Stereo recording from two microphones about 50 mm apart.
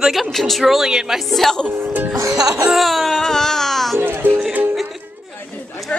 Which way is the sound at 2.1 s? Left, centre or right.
Right.